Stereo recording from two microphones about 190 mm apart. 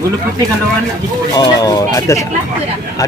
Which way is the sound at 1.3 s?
20° left (ahead or behind).